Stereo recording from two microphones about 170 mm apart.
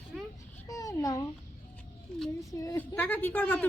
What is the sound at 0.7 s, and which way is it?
Babbling, 20° left (ahead or behind).